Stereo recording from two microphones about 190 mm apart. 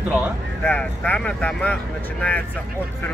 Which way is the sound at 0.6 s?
10° left (ahead or behind).